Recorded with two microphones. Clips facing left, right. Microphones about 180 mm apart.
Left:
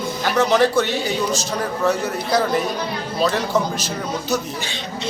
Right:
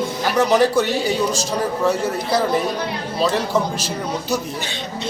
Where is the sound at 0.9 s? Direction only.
35° right (ahead or behind).